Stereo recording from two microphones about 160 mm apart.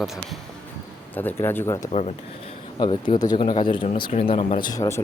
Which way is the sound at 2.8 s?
30° left (ahead or behind).